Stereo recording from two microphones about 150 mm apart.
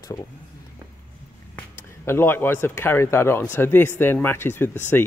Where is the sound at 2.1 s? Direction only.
15° left (ahead or behind).